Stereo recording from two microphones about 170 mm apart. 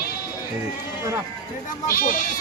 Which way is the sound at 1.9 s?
55° left (ahead or behind).